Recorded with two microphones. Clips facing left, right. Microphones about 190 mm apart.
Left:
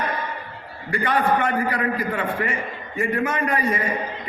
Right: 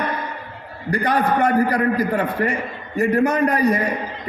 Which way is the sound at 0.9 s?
40° right (ahead or behind).